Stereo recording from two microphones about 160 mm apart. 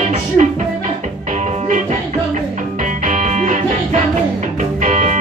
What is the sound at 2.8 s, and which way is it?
Music, 55° right (ahead or behind).